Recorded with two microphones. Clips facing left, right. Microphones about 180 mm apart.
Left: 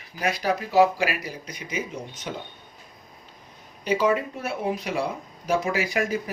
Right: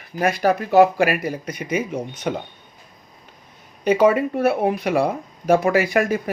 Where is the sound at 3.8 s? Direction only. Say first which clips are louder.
Right 7 dB; 60° right (ahead or behind).